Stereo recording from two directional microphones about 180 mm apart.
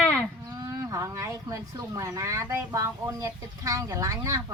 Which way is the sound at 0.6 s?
20° right (ahead or behind).